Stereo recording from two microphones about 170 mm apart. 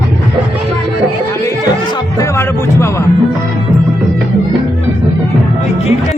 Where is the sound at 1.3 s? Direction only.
20° left (ahead or behind).